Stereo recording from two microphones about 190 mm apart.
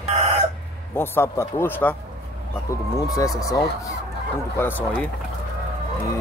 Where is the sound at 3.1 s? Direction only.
15° left (ahead or behind).